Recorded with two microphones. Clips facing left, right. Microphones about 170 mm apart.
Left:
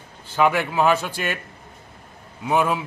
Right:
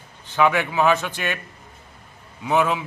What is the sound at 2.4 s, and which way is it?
Speech, 10° left (ahead or behind).